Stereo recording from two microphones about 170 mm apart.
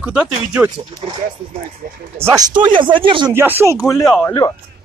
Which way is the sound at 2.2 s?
20° right (ahead or behind).